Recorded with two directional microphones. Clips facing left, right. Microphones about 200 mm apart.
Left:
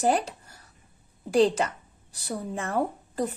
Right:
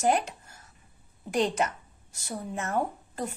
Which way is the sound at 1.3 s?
30° left (ahead or behind).